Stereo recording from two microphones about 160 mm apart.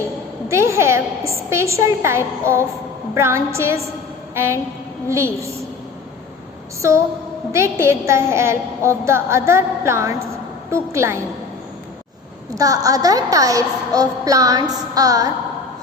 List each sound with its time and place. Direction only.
0.4 s a woman's voice: 15° right (ahead or behind)
6.8 s a woman's voice: 15° right (ahead or behind)
12.5 s a woman's voice: 20° right (ahead or behind)